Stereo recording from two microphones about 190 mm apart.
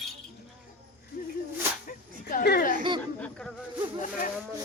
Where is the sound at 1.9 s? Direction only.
55° left (ahead or behind).